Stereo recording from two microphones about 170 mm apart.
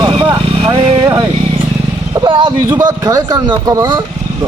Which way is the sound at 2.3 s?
30° right (ahead or behind).